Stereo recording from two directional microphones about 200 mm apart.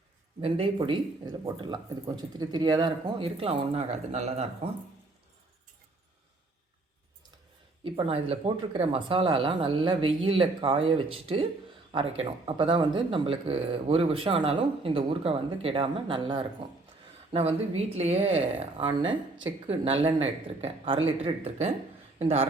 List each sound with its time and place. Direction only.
0.4 s speech: 25° right (ahead or behind)
7.9 s a man's voice: 30° right (ahead or behind)